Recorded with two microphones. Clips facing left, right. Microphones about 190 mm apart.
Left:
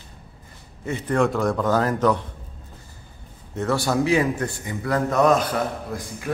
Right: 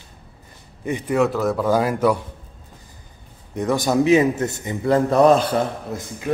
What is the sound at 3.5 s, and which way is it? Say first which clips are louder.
A man's voice: right 3 dB; 15° right (ahead or behind).